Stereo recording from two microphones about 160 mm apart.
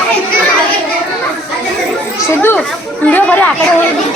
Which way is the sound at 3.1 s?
10° left (ahead or behind).